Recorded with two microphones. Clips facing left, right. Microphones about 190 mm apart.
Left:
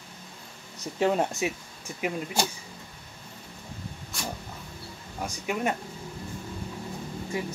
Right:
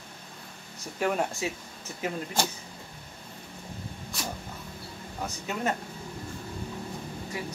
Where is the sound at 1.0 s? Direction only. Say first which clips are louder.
Left 3 dB; 20° left (ahead or behind).